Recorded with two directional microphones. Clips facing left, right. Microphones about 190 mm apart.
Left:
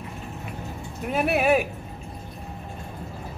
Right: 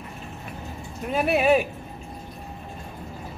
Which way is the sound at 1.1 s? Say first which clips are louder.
Right 1 dB; 5° left (ahead or behind).